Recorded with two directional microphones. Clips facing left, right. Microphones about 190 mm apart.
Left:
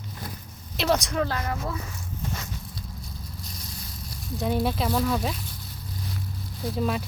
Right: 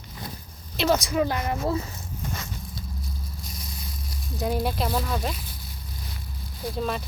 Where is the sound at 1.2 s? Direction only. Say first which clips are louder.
Right 2 dB; 15° right (ahead or behind).